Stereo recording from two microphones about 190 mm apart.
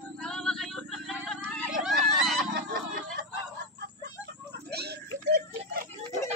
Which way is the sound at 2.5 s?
50° right (ahead or behind).